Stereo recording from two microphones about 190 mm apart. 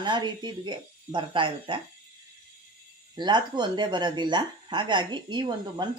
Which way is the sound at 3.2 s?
25° right (ahead or behind).